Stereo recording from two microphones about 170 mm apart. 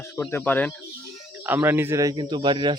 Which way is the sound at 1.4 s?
15° right (ahead or behind).